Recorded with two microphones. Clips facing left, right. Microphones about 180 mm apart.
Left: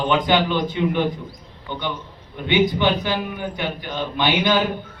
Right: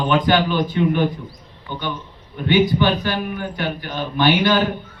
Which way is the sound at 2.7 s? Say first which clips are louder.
Right 1 dB; 15° left (ahead or behind).